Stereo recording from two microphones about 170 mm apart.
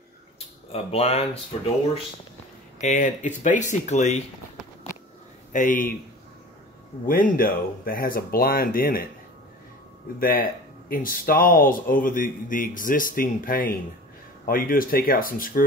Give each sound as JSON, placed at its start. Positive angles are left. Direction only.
{"t": 0.7, "sound": "speech", "side_deg": 35}
{"t": 2.8, "sound": "speech", "side_deg": 45}
{"t": 5.5, "sound": "speech", "side_deg": 50}
{"t": 7.1, "sound": "speech", "side_deg": 55}
{"t": 10.1, "sound": "speech", "side_deg": 60}